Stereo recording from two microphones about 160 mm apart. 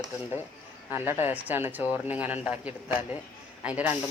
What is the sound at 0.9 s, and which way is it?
Speech, 15° right (ahead or behind).